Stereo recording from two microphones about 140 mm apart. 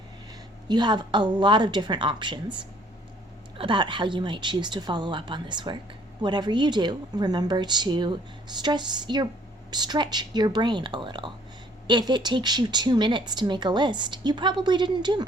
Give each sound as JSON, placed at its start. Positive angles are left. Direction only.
{"t": 0.7, "sound": "a woman's voice", "side_deg": -30}